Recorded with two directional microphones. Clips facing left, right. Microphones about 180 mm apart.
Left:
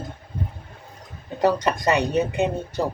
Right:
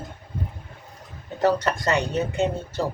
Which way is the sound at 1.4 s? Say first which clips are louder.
Left 1 dB; 15° left (ahead or behind).